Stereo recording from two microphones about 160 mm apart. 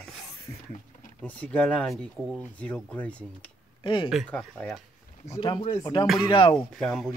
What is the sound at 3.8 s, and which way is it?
Speech, 35° left (ahead or behind).